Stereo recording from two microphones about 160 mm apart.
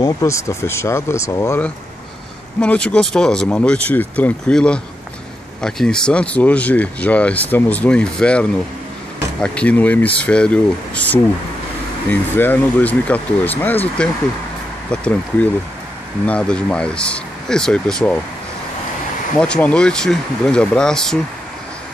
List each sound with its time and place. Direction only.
0.0 s speech: 20° left (ahead or behind)
2.6 s speech: 5° left (ahead or behind)
19.3 s speech: 5° left (ahead or behind)